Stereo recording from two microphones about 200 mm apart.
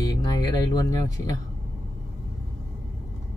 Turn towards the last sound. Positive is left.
turn(degrees=20)  # may be behind; listen again after turning